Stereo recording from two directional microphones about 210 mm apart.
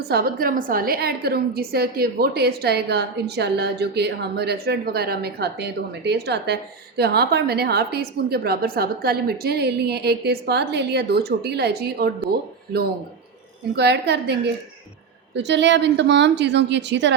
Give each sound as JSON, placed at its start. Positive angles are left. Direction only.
{"t": 0.1, "sound": "a woman's voice", "side_deg": -45}
{"t": 13.7, "sound": "a woman's voice", "side_deg": -55}